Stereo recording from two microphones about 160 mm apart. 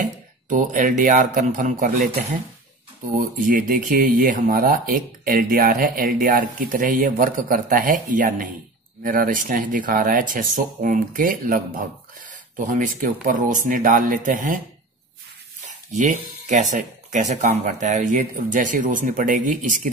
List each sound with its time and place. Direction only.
0.5 s speech: 55° right (ahead or behind)
3.2 s speech: 60° right (ahead or behind)
15.6 s speech: 50° right (ahead or behind)